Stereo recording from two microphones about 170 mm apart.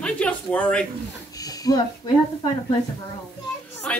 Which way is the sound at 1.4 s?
20° left (ahead or behind).